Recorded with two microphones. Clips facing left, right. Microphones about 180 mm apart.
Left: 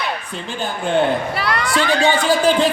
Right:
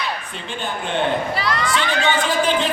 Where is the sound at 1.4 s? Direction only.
60° left (ahead or behind).